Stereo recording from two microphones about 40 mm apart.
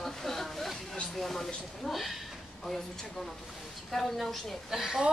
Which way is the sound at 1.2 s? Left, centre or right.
Centre.